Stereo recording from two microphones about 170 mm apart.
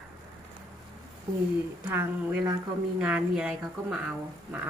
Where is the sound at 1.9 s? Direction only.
10° right (ahead or behind).